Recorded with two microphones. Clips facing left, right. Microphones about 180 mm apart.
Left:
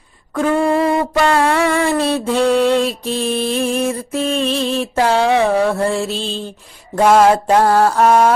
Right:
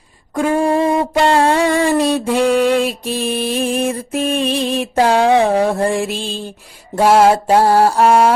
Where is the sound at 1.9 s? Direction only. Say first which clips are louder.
Right 1 dB; 10° right (ahead or behind).